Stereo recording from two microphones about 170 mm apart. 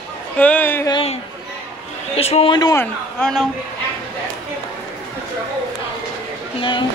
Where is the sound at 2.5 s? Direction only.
25° left (ahead or behind).